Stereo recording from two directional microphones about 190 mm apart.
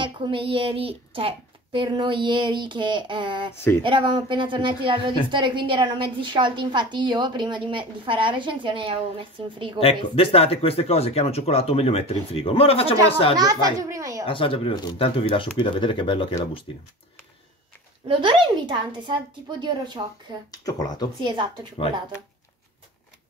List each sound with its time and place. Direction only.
0.0 s a woman's voice: 25° right (ahead or behind)
3.5 s a sound: 10° left (ahead or behind)
3.8 s a woman's voice: 25° right (ahead or behind)
9.8 s speech: 30° left (ahead or behind)
13.4 s a woman's voice: 20° right (ahead or behind)
14.2 s speech: 30° left (ahead or behind)
18.0 s a woman's voice: 25° right (ahead or behind)
20.5 s speech: 20° left (ahead or behind)